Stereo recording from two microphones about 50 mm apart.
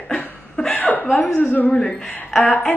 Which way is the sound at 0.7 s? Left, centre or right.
Left.